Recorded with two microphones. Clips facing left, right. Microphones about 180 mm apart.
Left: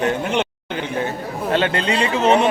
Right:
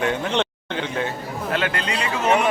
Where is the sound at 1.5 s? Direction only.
30° left (ahead or behind).